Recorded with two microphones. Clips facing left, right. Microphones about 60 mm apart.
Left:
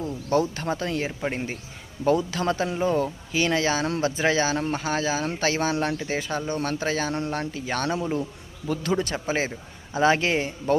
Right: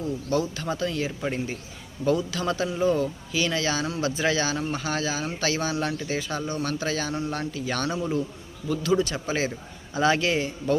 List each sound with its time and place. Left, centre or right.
0.0 s speech: left